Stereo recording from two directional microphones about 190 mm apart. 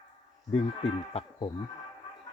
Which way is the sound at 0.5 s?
30° left (ahead or behind).